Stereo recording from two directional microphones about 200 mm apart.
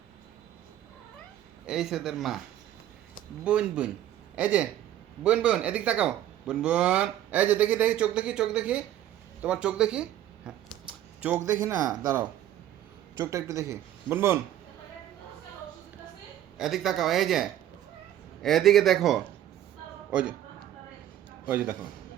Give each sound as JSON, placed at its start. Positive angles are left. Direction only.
{"t": 1.6, "sound": "speech", "side_deg": 0}
{"t": 3.4, "sound": "speech", "side_deg": -5}
{"t": 16.6, "sound": "a man's voice", "side_deg": 0}
{"t": 21.4, "sound": "speech", "side_deg": -10}